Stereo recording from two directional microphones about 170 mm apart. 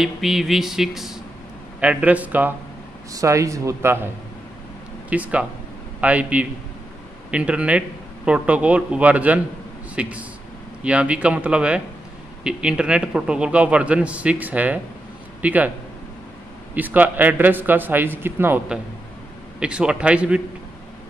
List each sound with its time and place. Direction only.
0.0 s a man's voice: centre (ahead or behind)
5.1 s a man's voice: 10° right (ahead or behind)
16.7 s a man's voice: 10° right (ahead or behind)